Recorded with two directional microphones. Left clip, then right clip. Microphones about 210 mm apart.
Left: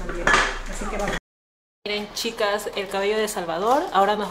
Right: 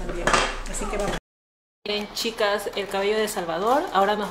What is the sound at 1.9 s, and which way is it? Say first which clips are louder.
Speech: even; centre (ahead or behind).